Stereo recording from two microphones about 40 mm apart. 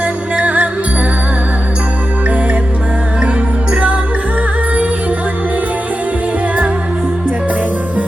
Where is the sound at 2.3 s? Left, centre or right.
Right.